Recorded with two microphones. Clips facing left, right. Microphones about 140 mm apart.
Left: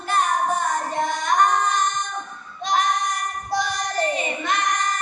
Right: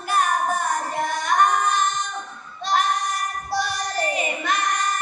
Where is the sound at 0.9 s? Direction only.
5° right (ahead or behind).